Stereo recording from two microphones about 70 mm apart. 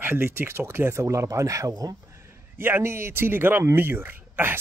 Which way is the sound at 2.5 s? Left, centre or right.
Right.